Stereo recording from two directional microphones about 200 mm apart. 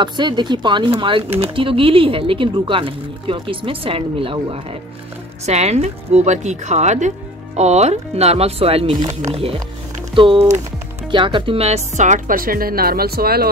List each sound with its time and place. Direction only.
0.0 s speech: 25° right (ahead or behind); by 13.5 s 50° right (ahead or behind)